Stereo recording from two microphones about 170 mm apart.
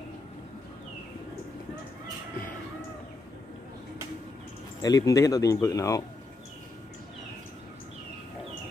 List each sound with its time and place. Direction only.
4.8 s speech: 20° left (ahead or behind)